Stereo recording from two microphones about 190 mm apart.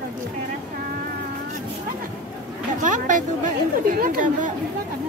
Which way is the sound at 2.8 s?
45° right (ahead or behind).